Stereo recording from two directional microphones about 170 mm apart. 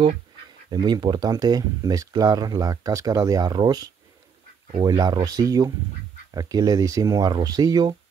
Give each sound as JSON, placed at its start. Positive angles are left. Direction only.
{"t": 0.7, "sound": "speech", "side_deg": -25}